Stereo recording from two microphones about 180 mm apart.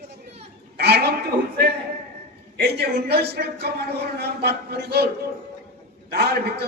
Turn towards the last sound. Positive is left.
turn(degrees=-65)  # may be behind; listen again after turning